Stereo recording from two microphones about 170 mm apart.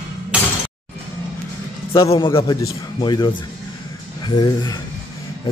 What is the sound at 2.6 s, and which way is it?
Speech, 20° left (ahead or behind).